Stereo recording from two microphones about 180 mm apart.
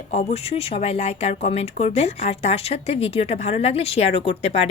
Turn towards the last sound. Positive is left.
turn(degrees=35)  # may be behind; listen again after turning